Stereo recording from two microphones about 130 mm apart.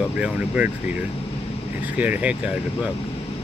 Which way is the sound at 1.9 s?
10° right (ahead or behind).